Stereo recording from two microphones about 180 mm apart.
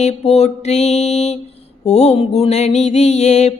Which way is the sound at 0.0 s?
35° left (ahead or behind).